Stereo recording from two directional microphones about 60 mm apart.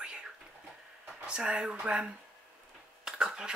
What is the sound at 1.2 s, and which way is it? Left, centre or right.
Speech, centre.